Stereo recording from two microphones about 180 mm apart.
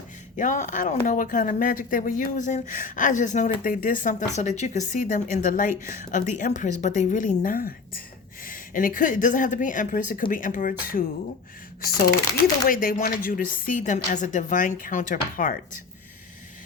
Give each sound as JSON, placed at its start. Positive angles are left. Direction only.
{"t": 0.3, "sound": "speech", "side_deg": 45}
{"t": 12.6, "sound": "speech", "side_deg": 55}